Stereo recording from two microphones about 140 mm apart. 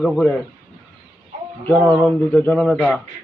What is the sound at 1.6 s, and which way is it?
Speech, 10° left (ahead or behind).